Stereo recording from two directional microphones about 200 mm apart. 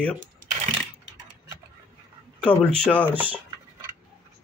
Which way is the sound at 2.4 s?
5° left (ahead or behind).